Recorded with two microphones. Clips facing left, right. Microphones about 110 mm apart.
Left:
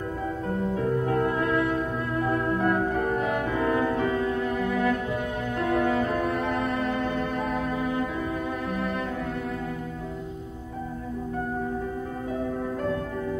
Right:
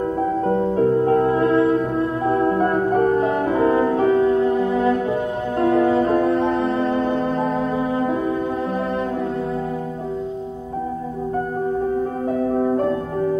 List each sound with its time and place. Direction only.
0.5 s music: 35° right (ahead or behind)
12.3 s music: 45° right (ahead or behind)